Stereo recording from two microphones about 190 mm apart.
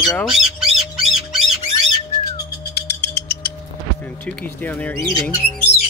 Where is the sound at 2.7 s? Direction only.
60° left (ahead or behind).